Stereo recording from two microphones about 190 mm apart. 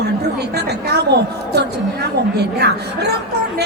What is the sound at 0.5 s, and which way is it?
A woman's voice, 60° right (ahead or behind).